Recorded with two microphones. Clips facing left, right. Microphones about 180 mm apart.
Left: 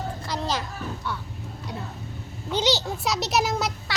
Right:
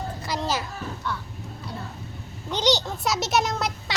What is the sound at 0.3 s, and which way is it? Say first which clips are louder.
Children playing: right 2 dB; 5° right (ahead or behind).